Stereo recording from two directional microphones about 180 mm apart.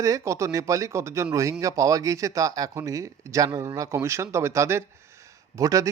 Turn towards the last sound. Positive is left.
turn(degrees=-20)  # may be behind; listen again after turning